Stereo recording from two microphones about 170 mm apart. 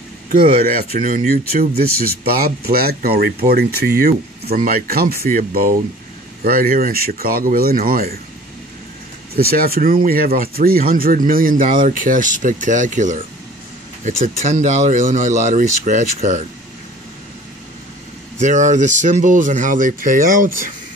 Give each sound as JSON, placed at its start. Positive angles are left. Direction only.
{"t": 0.9, "sound": "speech", "side_deg": -55}
{"t": 9.3, "sound": "speech", "side_deg": -65}
{"t": 18.4, "sound": "speech", "side_deg": -45}